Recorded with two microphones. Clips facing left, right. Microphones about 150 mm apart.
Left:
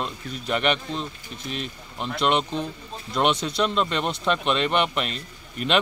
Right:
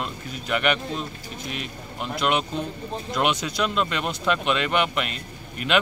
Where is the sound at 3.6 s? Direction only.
5° right (ahead or behind).